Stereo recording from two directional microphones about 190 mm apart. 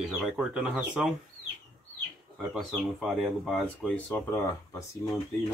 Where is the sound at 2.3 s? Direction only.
Centre (ahead or behind).